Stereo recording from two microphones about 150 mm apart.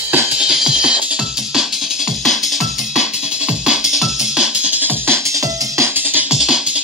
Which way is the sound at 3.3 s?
5° right (ahead or behind).